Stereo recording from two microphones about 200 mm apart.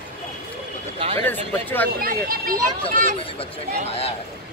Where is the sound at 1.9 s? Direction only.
45° right (ahead or behind).